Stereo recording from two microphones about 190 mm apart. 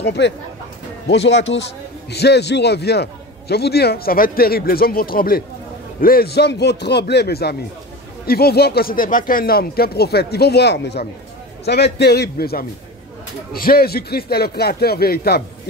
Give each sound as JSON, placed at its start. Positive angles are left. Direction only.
{"t": 0.0, "sound": "a man's voice", "side_deg": 60}